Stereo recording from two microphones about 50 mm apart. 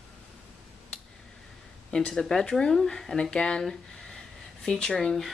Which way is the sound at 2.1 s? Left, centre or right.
Centre.